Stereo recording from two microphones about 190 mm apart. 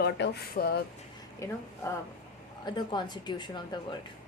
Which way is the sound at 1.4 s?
15° left (ahead or behind).